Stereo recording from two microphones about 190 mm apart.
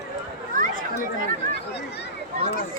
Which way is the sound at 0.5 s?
45° right (ahead or behind).